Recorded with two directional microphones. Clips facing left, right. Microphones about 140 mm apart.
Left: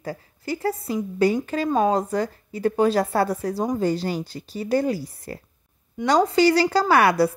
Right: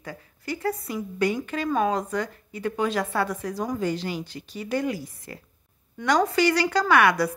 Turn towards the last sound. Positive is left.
turn(degrees=35)  # may be behind; listen again after turning